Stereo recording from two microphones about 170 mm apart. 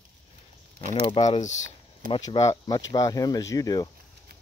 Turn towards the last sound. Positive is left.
turn(degrees=20)  # may be behind; listen again after turning